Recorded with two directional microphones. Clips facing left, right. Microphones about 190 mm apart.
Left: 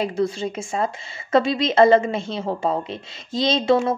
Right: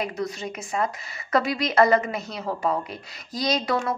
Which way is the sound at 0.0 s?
30° left (ahead or behind).